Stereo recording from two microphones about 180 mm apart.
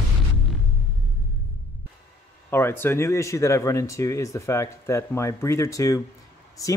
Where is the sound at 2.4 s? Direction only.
10° left (ahead or behind).